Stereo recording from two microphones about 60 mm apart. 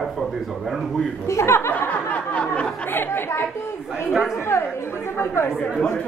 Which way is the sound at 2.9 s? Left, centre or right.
Left.